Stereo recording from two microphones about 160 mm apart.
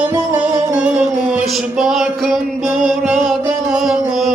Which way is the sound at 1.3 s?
Centre (ahead or behind).